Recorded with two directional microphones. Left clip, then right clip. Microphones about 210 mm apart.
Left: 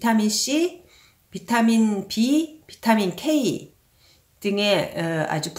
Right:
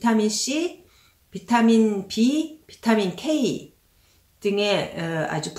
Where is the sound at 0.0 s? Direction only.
45° left (ahead or behind).